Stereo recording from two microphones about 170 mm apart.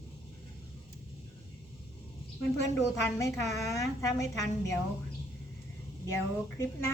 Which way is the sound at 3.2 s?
20° left (ahead or behind).